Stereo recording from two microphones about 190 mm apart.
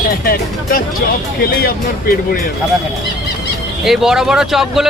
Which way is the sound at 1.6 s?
50° left (ahead or behind).